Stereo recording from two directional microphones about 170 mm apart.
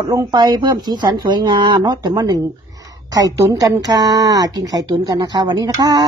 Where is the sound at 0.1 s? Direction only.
20° right (ahead or behind).